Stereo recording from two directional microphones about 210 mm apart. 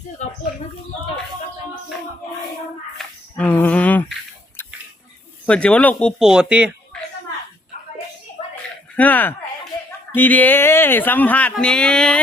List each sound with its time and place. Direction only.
0.2 s speech: 35° left (ahead or behind)
3.0 s a sound: 5° left (ahead or behind)
5.5 s speech: 5° left (ahead or behind)
9.0 s speech: 10° left (ahead or behind)